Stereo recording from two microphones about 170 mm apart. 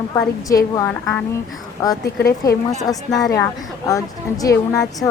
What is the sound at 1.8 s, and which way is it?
A woman's voice, 20° left (ahead or behind).